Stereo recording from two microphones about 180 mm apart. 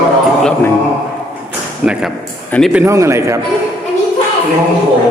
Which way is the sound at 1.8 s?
5° right (ahead or behind).